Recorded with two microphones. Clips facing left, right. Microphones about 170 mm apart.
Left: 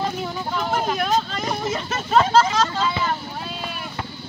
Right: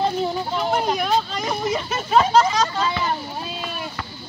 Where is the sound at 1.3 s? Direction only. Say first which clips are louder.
Right 1 dB; 5° right (ahead or behind).